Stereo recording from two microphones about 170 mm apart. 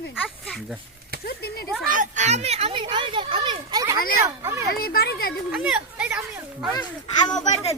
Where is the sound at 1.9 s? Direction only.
45° right (ahead or behind); by 3.9 s 25° right (ahead or behind).